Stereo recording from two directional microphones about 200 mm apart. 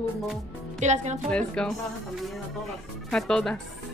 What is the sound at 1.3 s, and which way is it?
Speech, 5° left (ahead or behind).